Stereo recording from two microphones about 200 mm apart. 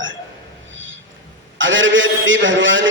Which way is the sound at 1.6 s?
70° right (ahead or behind).